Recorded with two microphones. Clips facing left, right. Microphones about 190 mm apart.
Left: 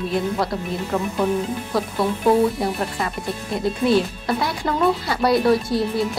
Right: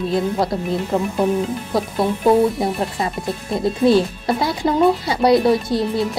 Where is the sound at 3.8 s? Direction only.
30° right (ahead or behind).